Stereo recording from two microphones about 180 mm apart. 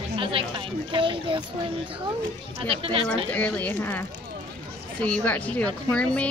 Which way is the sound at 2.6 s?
30° right (ahead or behind).